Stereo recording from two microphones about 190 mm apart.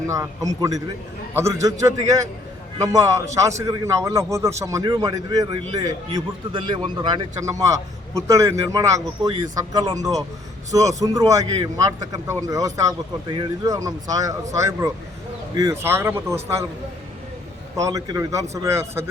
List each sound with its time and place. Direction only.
0.1 s a man's voice: 15° right (ahead or behind)
2.7 s a man's voice: 20° right (ahead or behind)
17.7 s a man's voice: 20° right (ahead or behind)